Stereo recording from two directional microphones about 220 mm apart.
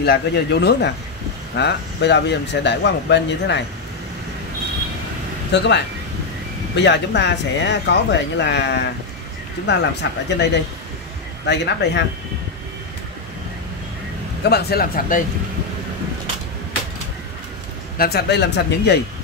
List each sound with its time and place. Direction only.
0.0 s speech: 45° left (ahead or behind)
5.5 s speech: 50° left (ahead or behind)
6.8 s speech: 50° left (ahead or behind)
10.3 s speech: 50° left (ahead or behind)
14.4 s speech: 45° left (ahead or behind)
17.9 s speech: 45° left (ahead or behind)